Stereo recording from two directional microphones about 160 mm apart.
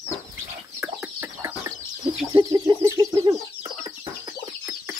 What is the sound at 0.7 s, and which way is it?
Chicken, 15° right (ahead or behind).